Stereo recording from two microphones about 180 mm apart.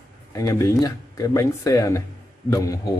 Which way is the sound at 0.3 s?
15° left (ahead or behind).